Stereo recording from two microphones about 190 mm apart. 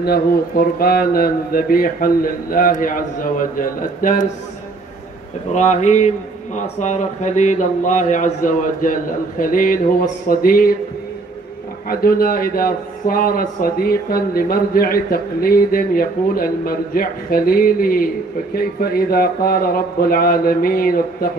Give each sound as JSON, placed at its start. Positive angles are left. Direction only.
{"t": 0.0, "sound": "a man's voice", "side_deg": 55}
{"t": 5.5, "sound": "speech", "side_deg": 40}
{"t": 11.9, "sound": "a man's voice", "side_deg": 50}